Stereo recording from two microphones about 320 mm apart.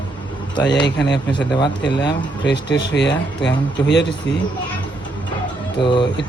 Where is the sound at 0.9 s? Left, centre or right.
Left.